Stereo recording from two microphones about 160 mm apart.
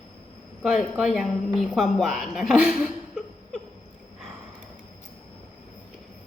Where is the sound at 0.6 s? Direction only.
Centre (ahead or behind).